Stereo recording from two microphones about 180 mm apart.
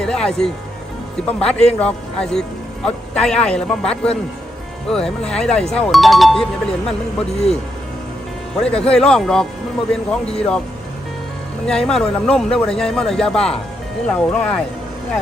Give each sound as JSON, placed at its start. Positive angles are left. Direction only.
{"t": 0.0, "sound": "speech", "side_deg": 5}
{"t": 7.2, "sound": "speech", "side_deg": 35}
{"t": 8.6, "sound": "speech", "side_deg": 5}
{"t": 11.6, "sound": "speech", "side_deg": 5}